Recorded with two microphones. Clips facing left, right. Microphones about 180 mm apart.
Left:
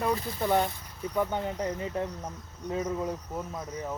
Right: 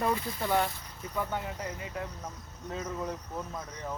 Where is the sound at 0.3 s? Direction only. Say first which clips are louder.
Left 3 dB; 20° left (ahead or behind).